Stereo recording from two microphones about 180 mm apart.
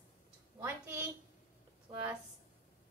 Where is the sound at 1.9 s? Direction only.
30° right (ahead or behind).